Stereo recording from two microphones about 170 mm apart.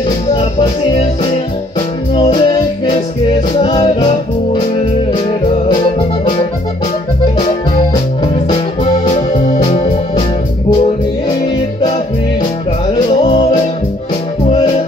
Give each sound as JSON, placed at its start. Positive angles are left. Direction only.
{"t": 2.1, "sound": "music", "side_deg": 30}
{"t": 9.0, "sound": "music", "side_deg": 40}